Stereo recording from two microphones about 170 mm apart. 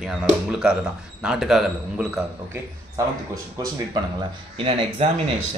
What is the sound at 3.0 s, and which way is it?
Speech, 20° right (ahead or behind).